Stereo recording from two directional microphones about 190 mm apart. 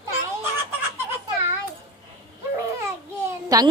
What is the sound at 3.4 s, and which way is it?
Speech, 20° right (ahead or behind).